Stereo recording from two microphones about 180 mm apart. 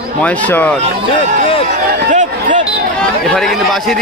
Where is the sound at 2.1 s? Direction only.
45° right (ahead or behind).